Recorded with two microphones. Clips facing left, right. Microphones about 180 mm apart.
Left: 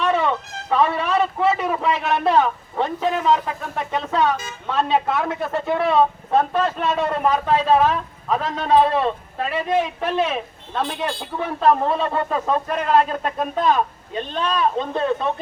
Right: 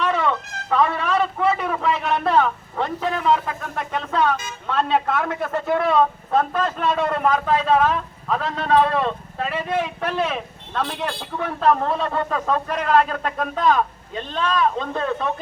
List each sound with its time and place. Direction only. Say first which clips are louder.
0.2 s music: left 1 dB; 10° left (ahead or behind)
0.8 s a sound: left 1 dB; 25° left (ahead or behind)
1.0 s a sound: left 1 dB; 5° left (ahead or behind)
1.5 s a man's voice: left 1 dB; 15° left (ahead or behind)
7.3 s a man's voice: left 2 dB; 25° left (ahead or behind)
9.0 s speech: left 2 dB; 10° left (ahead or behind)
10.0 s a man's voice: left 2 dB; 20° left (ahead or behind)
13.0 s a man's voice: left 1 dB; 25° left (ahead or behind)